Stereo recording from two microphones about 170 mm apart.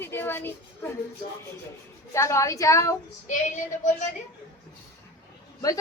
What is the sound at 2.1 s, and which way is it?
Speech, 15° left (ahead or behind).